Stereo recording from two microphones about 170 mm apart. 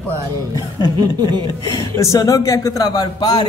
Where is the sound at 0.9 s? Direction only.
25° right (ahead or behind).